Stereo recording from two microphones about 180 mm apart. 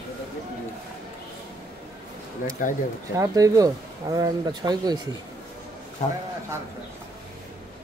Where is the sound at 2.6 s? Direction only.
45° left (ahead or behind).